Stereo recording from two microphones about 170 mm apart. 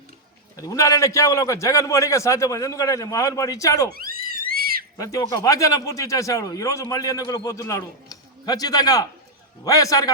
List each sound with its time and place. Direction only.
0.5 s speech: 20° left (ahead or behind)
3.9 s a sound: 60° right (ahead or behind)
4.9 s speech: 20° left (ahead or behind)